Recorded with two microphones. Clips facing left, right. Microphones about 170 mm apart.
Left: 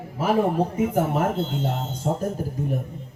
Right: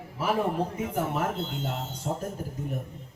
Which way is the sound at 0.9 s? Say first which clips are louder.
Left 6 dB; 45° left (ahead or behind).